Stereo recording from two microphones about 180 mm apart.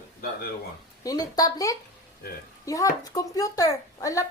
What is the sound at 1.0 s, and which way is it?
A woman's voice, 20° left (ahead or behind).